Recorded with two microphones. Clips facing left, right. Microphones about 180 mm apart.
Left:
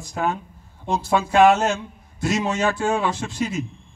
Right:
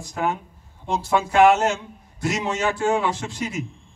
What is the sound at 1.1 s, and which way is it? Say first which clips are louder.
A man's voice: even; 20° right (ahead or behind).